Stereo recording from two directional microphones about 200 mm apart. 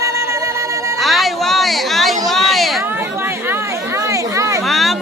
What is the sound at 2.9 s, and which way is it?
Chatter, 10° right (ahead or behind).